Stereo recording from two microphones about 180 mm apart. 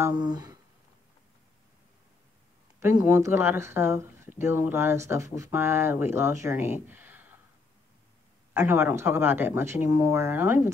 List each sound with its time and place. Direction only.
0.2 s speech: 20° right (ahead or behind)
2.8 s speech: 15° right (ahead or behind)
8.5 s speech: 10° right (ahead or behind)